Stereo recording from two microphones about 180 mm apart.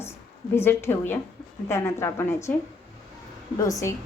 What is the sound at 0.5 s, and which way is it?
A woman's voice, 15° left (ahead or behind).